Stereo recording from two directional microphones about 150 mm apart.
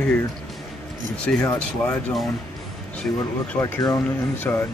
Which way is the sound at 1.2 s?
10° left (ahead or behind).